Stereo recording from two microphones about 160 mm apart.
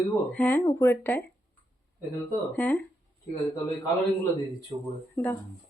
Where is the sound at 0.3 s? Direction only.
10° left (ahead or behind).